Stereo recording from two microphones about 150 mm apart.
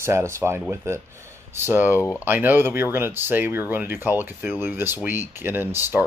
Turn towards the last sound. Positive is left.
turn(degrees=-15)  # may be behind; listen again after turning